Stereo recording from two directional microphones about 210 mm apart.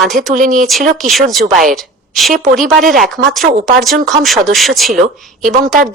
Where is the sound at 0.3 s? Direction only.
40° right (ahead or behind).